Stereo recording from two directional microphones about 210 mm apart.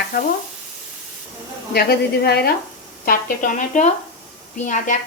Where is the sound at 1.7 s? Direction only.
50° left (ahead or behind).